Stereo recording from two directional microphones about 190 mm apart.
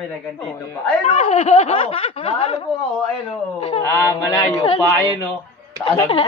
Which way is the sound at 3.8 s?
15° left (ahead or behind).